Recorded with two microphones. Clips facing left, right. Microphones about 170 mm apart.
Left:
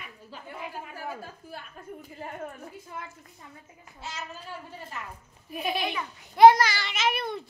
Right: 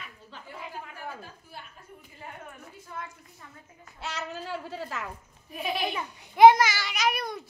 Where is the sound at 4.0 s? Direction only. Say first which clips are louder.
Right 4 dB; 70° right (ahead or behind); by 5.1 s 90° right.